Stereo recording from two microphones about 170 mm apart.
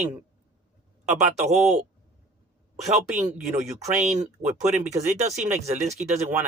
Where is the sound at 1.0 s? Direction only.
40° right (ahead or behind).